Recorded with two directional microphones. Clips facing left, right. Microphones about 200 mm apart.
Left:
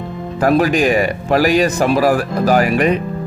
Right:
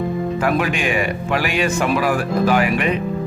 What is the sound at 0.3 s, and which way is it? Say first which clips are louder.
Speech: left 9 dB; 40° left (ahead or behind).